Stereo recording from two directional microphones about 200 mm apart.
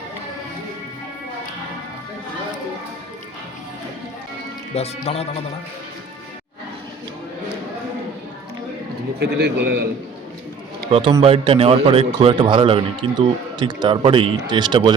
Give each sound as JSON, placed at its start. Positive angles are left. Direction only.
{"t": 4.7, "sound": "speech", "side_deg": 30}
{"t": 9.1, "sound": "a man's voice", "side_deg": -55}
{"t": 11.2, "sound": "a man's voice", "side_deg": -30}